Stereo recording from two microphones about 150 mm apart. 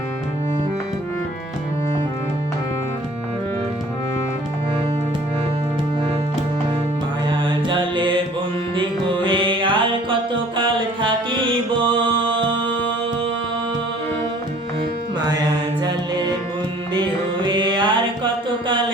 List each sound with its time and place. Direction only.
7.3 s mantra: 35° right (ahead or behind)
9.2 s music: 35° right (ahead or behind)
16.9 s music: 30° right (ahead or behind)